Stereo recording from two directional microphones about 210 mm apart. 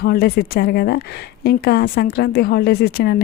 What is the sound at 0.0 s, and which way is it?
Speech, 50° left (ahead or behind).